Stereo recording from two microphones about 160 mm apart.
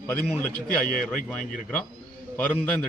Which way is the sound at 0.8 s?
5° left (ahead or behind).